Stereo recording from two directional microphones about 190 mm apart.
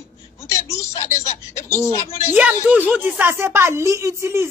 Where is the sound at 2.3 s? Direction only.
5° right (ahead or behind).